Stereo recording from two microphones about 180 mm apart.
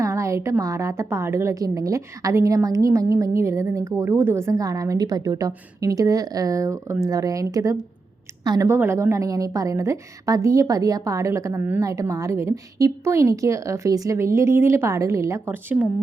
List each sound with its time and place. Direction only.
0.0 s a woman's voice: 15° right (ahead or behind)